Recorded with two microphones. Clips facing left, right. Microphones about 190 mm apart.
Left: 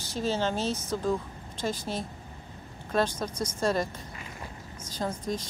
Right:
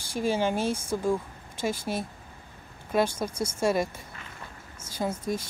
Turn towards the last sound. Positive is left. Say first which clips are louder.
# right 2 dB
turn(degrees=-10)  # may be behind; listen again after turning